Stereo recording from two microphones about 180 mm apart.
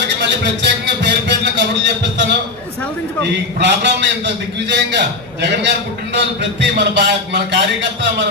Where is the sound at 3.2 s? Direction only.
70° right (ahead or behind).